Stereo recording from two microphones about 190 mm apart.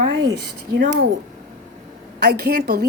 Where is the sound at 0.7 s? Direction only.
65° right (ahead or behind).